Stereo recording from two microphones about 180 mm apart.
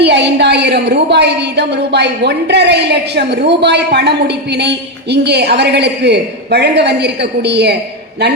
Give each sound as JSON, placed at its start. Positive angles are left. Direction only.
{"t": 0.0, "sound": "a woman's voice", "side_deg": -70}